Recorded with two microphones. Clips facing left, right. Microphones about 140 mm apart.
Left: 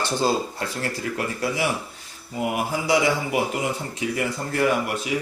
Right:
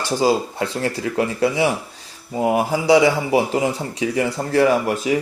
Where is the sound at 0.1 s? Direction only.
10° right (ahead or behind).